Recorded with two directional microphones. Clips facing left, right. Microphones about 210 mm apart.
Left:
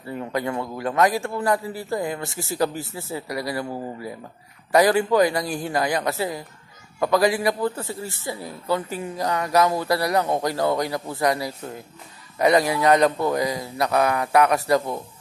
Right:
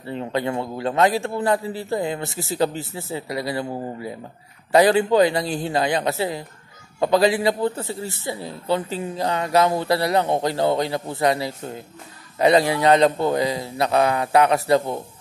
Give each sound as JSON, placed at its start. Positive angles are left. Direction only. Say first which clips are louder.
{"t": 0.0, "sound": "a man's voice", "louder": "right 2 dB", "side_deg": -25}